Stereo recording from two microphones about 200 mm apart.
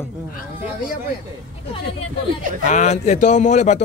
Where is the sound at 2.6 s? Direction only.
35° left (ahead or behind).